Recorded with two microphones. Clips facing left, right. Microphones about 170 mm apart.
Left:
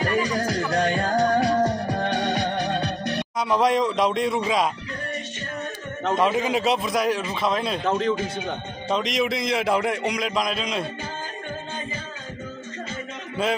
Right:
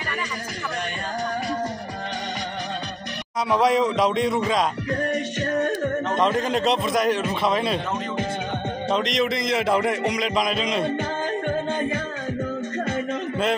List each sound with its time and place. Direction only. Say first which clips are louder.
0.5 s music: left 8 dB; 85° left; by 2.4 s 65° left (ahead or behind)
3.4 s a man's voice: right 1 dB; centre (ahead or behind)
6.1 s a man's voice: left 2 dB; 5° left (ahead or behind)
8.9 s a man's voice: even; centre (ahead or behind)